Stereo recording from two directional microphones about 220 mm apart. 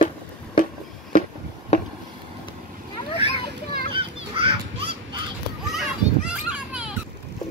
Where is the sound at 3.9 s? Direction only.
25° right (ahead or behind).